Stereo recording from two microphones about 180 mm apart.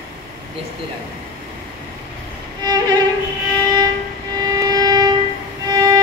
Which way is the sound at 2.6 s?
20° right (ahead or behind).